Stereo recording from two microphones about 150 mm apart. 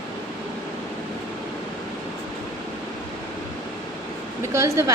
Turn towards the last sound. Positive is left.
turn(degrees=-20)  # may be behind; listen again after turning